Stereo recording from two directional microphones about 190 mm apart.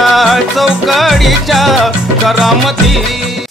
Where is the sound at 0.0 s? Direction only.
Centre (ahead or behind).